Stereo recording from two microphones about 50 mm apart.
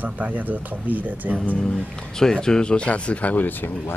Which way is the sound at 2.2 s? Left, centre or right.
Centre.